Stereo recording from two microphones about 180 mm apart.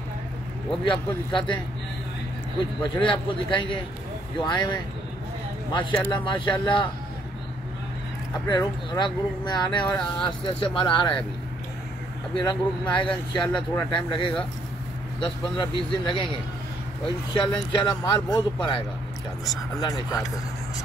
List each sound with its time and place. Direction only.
0.8 s speech: 25° left (ahead or behind)
2.8 s speech: 25° left (ahead or behind)
8.5 s speech: 25° left (ahead or behind)
12.4 s speech: 25° left (ahead or behind)
17.4 s speech: 25° left (ahead or behind)
19.8 s speech: 20° left (ahead or behind)